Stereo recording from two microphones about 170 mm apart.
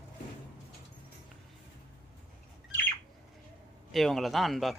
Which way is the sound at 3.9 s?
Centre (ahead or behind).